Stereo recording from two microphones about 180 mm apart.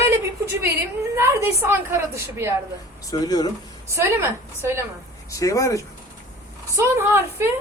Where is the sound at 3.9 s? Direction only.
15° right (ahead or behind).